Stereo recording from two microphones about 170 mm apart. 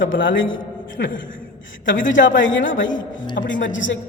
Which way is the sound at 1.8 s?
90° left.